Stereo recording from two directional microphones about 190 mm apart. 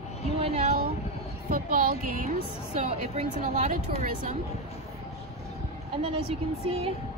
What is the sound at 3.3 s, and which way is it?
Speech, 40° right (ahead or behind).